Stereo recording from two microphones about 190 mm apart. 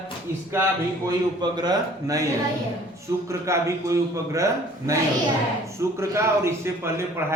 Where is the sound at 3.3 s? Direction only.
15° right (ahead or behind).